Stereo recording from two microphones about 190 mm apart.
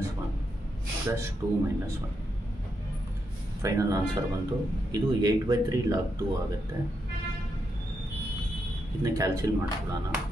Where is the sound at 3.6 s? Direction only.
15° right (ahead or behind).